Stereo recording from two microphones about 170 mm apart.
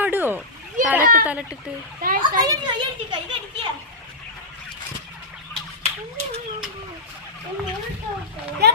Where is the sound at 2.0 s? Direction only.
55° right (ahead or behind).